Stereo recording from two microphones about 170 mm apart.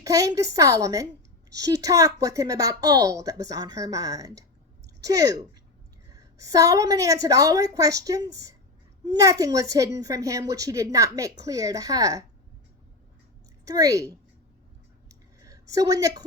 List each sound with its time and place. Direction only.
0.0 s a woman's voice: 20° right (ahead or behind)
13.7 s a woman's voice: 20° right (ahead or behind)
15.1 s clicking: 20° right (ahead or behind)